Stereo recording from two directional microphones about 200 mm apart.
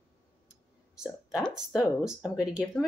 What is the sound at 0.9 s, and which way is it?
Speech, 5° right (ahead or behind).